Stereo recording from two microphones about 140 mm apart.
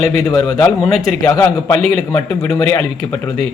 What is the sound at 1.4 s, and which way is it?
Speech, 10° left (ahead or behind).